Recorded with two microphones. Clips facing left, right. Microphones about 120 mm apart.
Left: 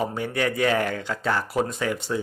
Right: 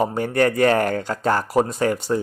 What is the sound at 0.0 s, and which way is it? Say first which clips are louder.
Speech: right 6 dB; 45° right (ahead or behind).